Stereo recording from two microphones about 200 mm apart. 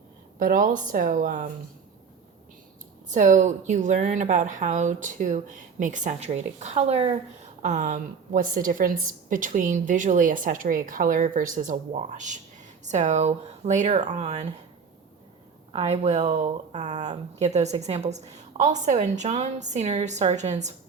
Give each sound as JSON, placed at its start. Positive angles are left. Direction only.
{"t": 0.3, "sound": "a woman's voice", "side_deg": -45}
{"t": 3.1, "sound": "a woman's voice", "side_deg": -40}
{"t": 15.7, "sound": "a woman's voice", "side_deg": -30}